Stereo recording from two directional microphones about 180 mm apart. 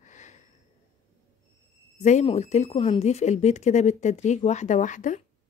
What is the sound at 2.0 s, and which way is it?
Speech, 40° left (ahead or behind).